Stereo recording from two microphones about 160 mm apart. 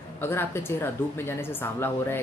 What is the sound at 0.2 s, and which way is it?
Speech, 15° left (ahead or behind).